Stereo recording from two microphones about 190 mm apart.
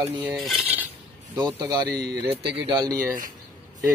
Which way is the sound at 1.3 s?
20° right (ahead or behind).